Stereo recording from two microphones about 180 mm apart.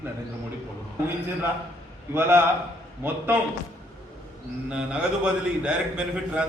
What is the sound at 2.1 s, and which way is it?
A man's voice, 10° right (ahead or behind).